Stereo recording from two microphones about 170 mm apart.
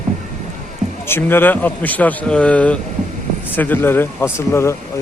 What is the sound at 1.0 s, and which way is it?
A man's voice, 15° left (ahead or behind).